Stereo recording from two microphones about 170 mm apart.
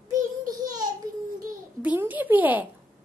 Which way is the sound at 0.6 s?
25° right (ahead or behind).